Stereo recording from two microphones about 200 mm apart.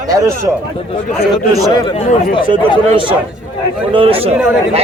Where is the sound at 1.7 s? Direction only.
30° left (ahead or behind).